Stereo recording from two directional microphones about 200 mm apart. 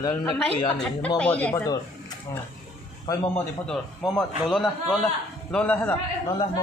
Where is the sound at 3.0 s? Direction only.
20° left (ahead or behind).